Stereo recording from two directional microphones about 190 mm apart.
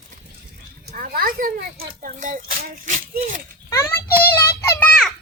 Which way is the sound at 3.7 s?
15° left (ahead or behind).